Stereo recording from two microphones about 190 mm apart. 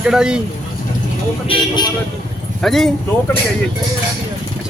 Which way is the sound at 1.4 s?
25° left (ahead or behind).